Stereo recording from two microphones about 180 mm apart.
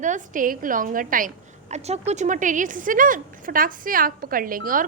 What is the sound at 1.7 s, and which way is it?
A woman's voice, 35° right (ahead or behind).